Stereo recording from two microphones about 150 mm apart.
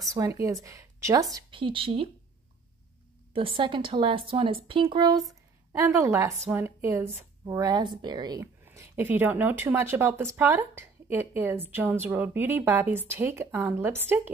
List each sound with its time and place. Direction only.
0.0 s speech: 20° right (ahead or behind)
1.3 s a woman's voice: 35° right (ahead or behind)
3.3 s speech: 35° right (ahead or behind)
8.6 s speech: 15° right (ahead or behind)